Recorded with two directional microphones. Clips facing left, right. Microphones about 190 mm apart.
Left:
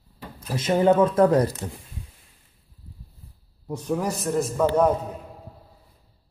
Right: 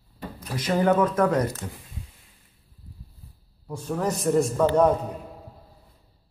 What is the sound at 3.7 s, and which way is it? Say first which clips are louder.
A man's voice: left 1 dB; 15° left (ahead or behind).